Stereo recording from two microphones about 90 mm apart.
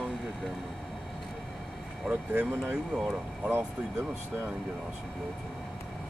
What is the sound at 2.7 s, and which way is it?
Speech, 5° right (ahead or behind).